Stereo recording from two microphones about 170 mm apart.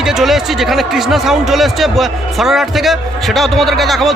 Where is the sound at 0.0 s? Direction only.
Centre (ahead or behind).